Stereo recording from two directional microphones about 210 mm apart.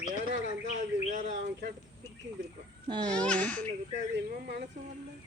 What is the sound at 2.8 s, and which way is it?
Speech, 20° right (ahead or behind).